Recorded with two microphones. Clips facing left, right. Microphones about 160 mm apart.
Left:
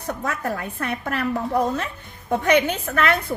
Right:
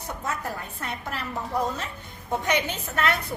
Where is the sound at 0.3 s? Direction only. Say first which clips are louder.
Left 4 dB; 65° left (ahead or behind).